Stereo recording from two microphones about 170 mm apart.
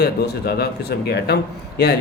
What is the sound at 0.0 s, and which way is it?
Speech, 70° left (ahead or behind).